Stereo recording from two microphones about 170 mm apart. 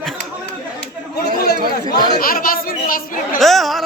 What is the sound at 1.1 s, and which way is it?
Chatter, 70° left (ahead or behind).